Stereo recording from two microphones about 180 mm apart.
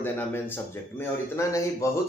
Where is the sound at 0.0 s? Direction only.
10° left (ahead or behind).